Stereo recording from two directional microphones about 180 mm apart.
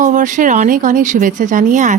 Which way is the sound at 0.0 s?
45° right (ahead or behind).